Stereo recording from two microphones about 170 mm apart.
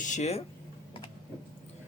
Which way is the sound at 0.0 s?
45° left (ahead or behind).